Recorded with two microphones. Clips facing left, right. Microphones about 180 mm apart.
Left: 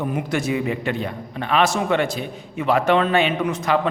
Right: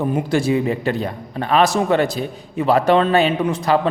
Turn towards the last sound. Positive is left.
turn(degrees=-35)  # may be behind; listen again after turning